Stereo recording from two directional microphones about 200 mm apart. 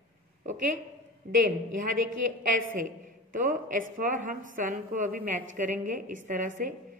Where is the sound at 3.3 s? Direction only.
40° right (ahead or behind).